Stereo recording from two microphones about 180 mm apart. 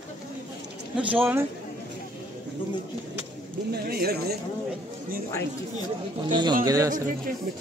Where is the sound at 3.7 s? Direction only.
60° right (ahead or behind).